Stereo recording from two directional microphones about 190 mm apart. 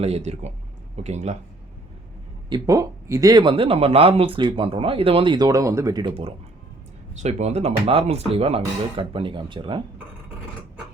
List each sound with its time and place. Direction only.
0.0 s speech: 35° right (ahead or behind)
2.5 s speech: 15° right (ahead or behind)